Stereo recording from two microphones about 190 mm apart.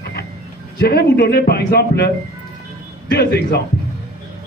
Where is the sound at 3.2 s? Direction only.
60° left (ahead or behind).